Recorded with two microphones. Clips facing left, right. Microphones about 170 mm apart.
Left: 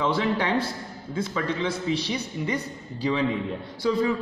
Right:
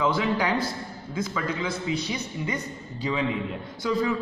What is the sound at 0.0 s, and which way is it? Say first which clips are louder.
A man's voice: even; 30° left (ahead or behind).